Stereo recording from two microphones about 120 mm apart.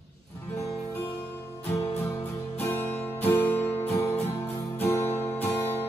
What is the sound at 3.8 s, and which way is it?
Music, 60° left (ahead or behind).